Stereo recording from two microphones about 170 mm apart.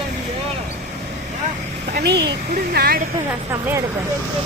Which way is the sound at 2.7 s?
65° right (ahead or behind).